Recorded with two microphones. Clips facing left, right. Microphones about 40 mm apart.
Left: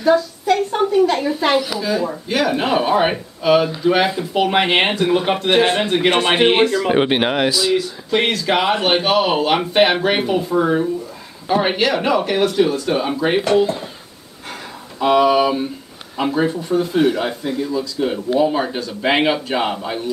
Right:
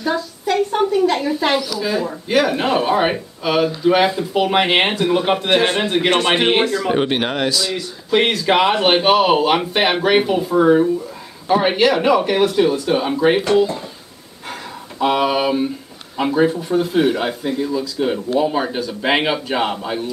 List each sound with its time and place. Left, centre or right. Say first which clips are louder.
0.0 s speech: left 5 dB; centre
2.2 s speech: right 3 dB; centre
6.8 s speech: left 2 dB; centre
8.1 s speech: right 2 dB; centre
10.6 s speech: right 4 dB; centre
15.0 s speech: left 3 dB; centre